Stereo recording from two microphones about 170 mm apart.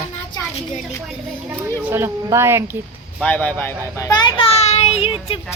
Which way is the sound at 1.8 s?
15° right (ahead or behind).